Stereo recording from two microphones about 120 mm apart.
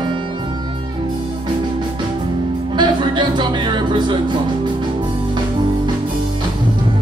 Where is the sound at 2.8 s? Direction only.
40° right (ahead or behind).